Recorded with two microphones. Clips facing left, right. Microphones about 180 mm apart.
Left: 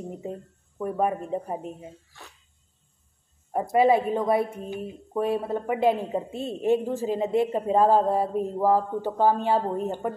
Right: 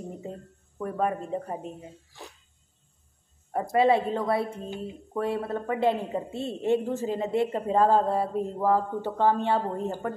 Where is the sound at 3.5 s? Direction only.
15° left (ahead or behind).